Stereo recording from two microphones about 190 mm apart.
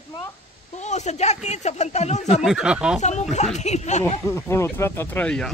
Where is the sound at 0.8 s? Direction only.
35° left (ahead or behind).